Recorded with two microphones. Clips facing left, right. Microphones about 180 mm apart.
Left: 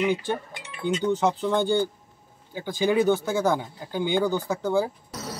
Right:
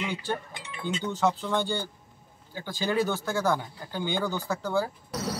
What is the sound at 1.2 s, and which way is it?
Speech, 15° left (ahead or behind).